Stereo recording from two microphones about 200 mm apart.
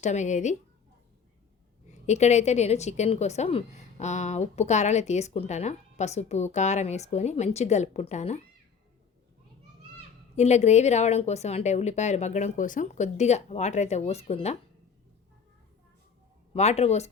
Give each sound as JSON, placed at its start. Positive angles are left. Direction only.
{"t": 0.0, "sound": "a woman's voice", "side_deg": 35}
{"t": 1.9, "sound": "a woman's voice", "side_deg": 35}
{"t": 10.3, "sound": "a woman's voice", "side_deg": 35}
{"t": 16.6, "sound": "a woman's voice", "side_deg": 35}